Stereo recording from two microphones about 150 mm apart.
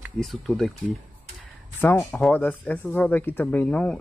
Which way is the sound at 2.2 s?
10° left (ahead or behind).